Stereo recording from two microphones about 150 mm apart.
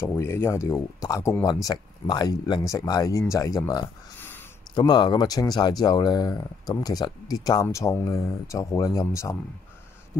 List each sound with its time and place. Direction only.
0.0 s speech: 15° left (ahead or behind)